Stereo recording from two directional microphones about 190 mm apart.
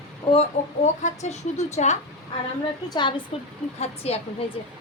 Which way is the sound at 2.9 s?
25° left (ahead or behind).